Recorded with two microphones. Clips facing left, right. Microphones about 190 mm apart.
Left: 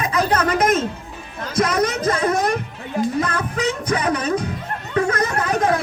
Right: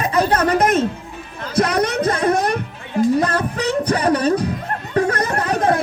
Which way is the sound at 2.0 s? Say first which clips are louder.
Right 1 dB; 35° right (ahead or behind).